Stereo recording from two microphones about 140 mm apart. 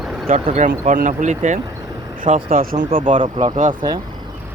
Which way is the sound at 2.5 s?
85° right.